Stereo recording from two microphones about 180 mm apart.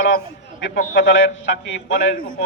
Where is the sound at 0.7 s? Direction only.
50° left (ahead or behind).